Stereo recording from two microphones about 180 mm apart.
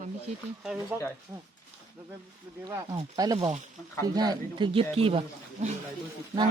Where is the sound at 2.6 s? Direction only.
20° right (ahead or behind).